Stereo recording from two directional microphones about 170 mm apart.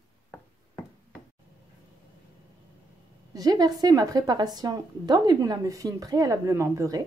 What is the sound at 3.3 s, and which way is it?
A woman's voice, 20° right (ahead or behind).